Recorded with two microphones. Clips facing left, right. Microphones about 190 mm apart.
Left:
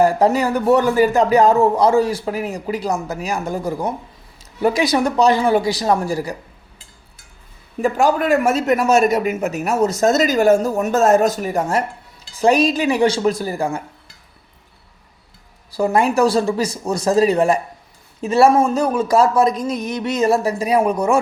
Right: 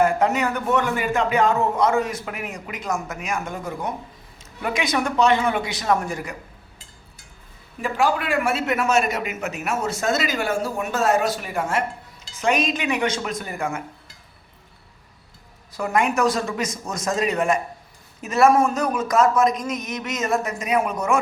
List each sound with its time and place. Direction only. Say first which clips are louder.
0.0 s speech: left 5 dB; 35° left (ahead or behind)
7.8 s speech: left 6 dB; 45° left (ahead or behind)
15.7 s speech: left 5 dB; 30° left (ahead or behind)